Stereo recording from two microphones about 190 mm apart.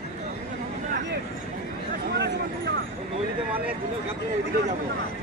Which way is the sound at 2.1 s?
60° right (ahead or behind).